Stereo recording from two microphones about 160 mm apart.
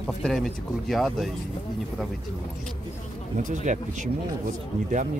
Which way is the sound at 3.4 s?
50° right (ahead or behind).